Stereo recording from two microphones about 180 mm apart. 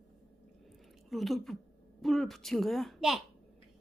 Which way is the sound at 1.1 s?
Centre (ahead or behind).